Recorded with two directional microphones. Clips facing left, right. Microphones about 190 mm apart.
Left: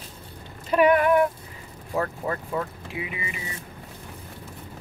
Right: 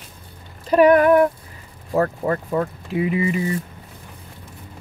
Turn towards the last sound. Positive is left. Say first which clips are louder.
# right 13 dB
turn(degrees=-40)  # may be behind; listen again after turning